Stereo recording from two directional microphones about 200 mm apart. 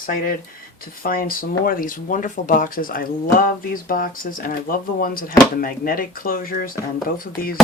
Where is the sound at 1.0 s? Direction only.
45° left (ahead or behind).